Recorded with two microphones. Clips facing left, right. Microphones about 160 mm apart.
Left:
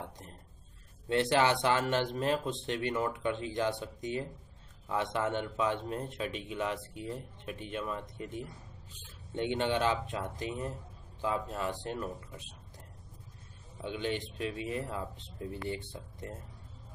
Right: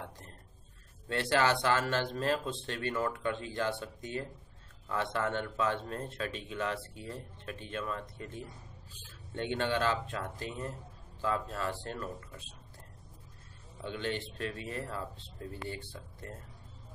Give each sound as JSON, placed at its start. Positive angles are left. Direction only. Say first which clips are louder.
{"t": 1.0, "sound": "a man's voice", "louder": "left 2 dB", "side_deg": 20}
{"t": 13.8, "sound": "a man's voice", "louder": "left 1 dB", "side_deg": 15}